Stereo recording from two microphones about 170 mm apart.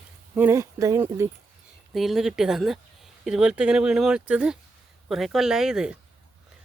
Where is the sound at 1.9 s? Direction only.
Centre (ahead or behind).